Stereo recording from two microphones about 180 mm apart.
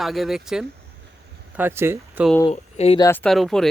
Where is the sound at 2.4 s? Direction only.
35° left (ahead or behind).